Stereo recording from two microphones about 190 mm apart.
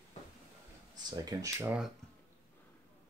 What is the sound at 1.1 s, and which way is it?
Speech, 20° right (ahead or behind).